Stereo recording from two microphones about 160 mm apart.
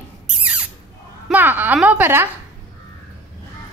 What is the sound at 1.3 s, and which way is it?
A woman's voice, 10° right (ahead or behind).